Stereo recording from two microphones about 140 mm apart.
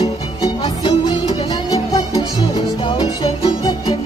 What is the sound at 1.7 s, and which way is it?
Music, 25° left (ahead or behind).